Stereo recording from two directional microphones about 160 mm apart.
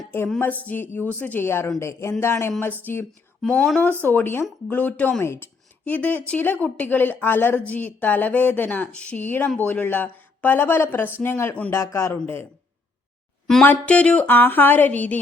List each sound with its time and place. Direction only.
0.3 s speech: 10° left (ahead or behind)
3.4 s speech: centre (ahead or behind)
13.5 s speech: 5° left (ahead or behind)